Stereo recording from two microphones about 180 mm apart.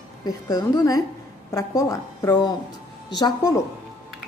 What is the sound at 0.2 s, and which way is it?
A woman's voice, 20° left (ahead or behind).